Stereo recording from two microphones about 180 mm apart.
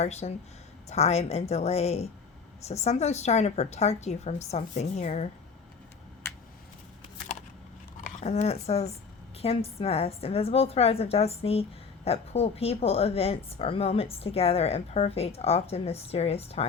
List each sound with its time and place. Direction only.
0.0 s a woman's voice: 35° left (ahead or behind)
8.2 s a woman's voice: 35° left (ahead or behind)